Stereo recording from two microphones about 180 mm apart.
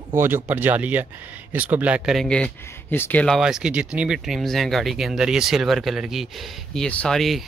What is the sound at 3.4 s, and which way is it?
Speech, 5° right (ahead or behind).